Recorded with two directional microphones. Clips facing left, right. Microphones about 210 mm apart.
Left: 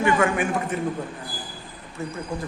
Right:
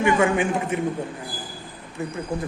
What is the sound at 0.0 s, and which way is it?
Speech, 20° right (ahead or behind).